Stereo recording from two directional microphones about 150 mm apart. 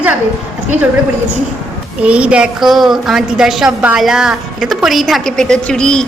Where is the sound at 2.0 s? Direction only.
10° right (ahead or behind).